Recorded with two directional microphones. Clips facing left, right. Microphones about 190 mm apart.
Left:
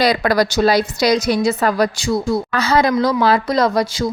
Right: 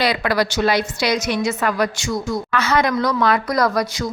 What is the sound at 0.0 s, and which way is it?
Speech, 40° left (ahead or behind).